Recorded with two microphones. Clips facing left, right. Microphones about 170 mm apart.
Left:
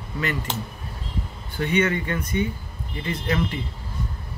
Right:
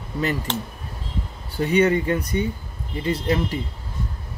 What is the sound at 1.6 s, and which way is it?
Speech, 35° right (ahead or behind).